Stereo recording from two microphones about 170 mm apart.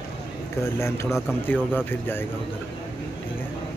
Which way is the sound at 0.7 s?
15° left (ahead or behind).